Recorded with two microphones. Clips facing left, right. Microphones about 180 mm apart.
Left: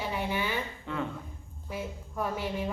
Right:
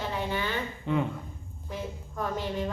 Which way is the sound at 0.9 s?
20° right (ahead or behind).